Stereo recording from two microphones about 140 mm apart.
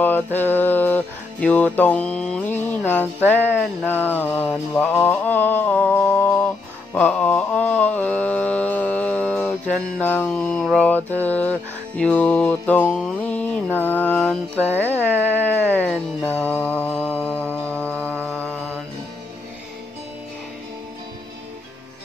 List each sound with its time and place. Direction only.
0.0 s music: 15° left (ahead or behind)
10.6 s mantra: centre (ahead or behind)
10.9 s music: 10° left (ahead or behind)
12.0 s mantra: 10° left (ahead or behind)
14.6 s music: 10° left (ahead or behind)
15.1 s a sound: 15° right (ahead or behind)
15.4 s speech: 10° left (ahead or behind)
16.3 s mantra: 10° left (ahead or behind)
17.6 s music: 15° right (ahead or behind)
18.1 s mantra: 15° right (ahead or behind)